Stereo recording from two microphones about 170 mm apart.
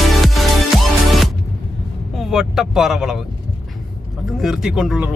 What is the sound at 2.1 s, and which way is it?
Vehicle, centre (ahead or behind).